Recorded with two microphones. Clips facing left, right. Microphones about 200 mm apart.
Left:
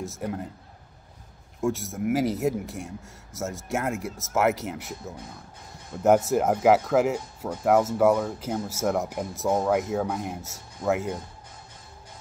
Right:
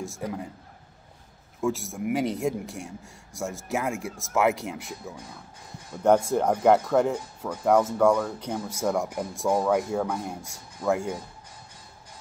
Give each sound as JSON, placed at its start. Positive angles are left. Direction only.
{"t": 0.0, "sound": "speech", "side_deg": 0}
{"t": 1.6, "sound": "speech", "side_deg": 0}